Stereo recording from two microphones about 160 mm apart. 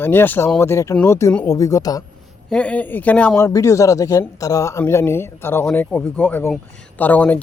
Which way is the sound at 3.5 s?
20° left (ahead or behind).